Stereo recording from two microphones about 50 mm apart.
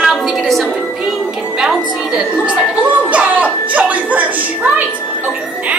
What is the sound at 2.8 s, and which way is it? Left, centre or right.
Music, right.